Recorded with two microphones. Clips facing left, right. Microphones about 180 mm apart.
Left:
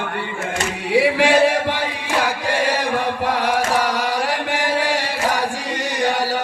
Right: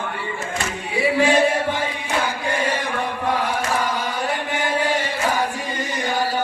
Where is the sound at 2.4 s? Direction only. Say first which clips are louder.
Left 3 dB; 80° left.